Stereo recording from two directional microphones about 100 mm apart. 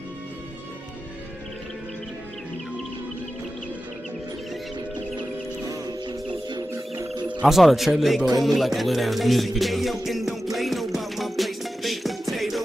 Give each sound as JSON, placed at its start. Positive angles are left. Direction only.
{"t": 7.2, "sound": "music", "side_deg": -10}